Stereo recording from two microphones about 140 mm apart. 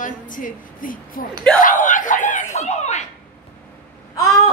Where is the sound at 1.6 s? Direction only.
70° left (ahead or behind); by 3.0 s 50° left (ahead or behind).